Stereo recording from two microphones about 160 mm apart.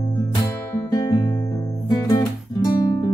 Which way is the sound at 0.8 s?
25° left (ahead or behind).